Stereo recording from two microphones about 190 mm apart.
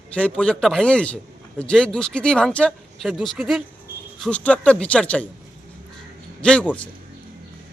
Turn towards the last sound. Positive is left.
turn(degrees=5)  # may be behind; listen again after turning